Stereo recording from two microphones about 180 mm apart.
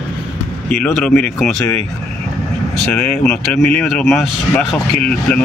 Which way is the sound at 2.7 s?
5° left (ahead or behind).